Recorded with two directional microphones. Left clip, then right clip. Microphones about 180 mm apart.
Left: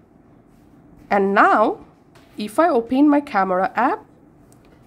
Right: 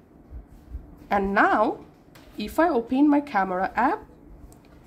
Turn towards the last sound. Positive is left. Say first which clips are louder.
# left 5 dB
turn(degrees=20)  # may be behind; listen again after turning